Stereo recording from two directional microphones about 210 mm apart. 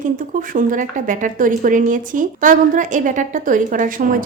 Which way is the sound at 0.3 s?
40° right (ahead or behind).